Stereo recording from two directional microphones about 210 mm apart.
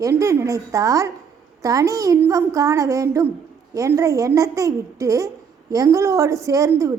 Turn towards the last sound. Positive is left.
turn(degrees=-15)  # may be behind; listen again after turning